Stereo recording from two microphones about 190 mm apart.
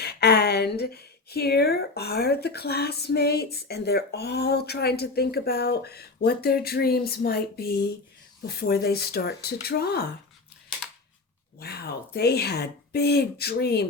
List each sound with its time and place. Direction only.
0.0 s speech: 60° left (ahead or behind)
11.6 s speech: 55° left (ahead or behind)